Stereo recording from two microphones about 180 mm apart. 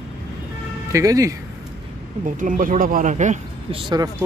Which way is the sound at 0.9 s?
20° right (ahead or behind).